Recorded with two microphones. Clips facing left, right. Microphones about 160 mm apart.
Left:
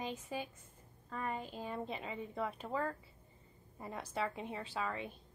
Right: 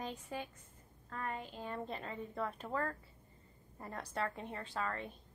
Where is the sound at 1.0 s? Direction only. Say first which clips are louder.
Left 2 dB; 10° left (ahead or behind).